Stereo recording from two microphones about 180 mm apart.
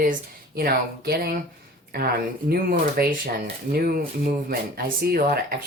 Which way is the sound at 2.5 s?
55° right (ahead or behind).